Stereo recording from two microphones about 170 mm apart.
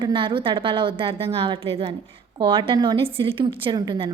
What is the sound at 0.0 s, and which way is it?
A woman's voice, 30° right (ahead or behind).